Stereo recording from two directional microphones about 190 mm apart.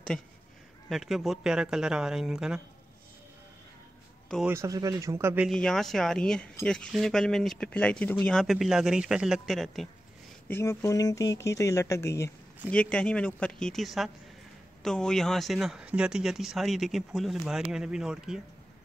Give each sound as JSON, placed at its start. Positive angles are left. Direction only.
{"t": 0.8, "sound": "speech", "side_deg": 0}
{"t": 4.5, "sound": "speech", "side_deg": -15}
{"t": 5.5, "sound": "speech", "side_deg": 0}
{"t": 10.5, "sound": "speech", "side_deg": 15}